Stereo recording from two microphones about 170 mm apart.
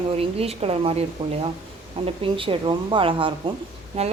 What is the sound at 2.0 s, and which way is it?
A woman's voice, 30° right (ahead or behind).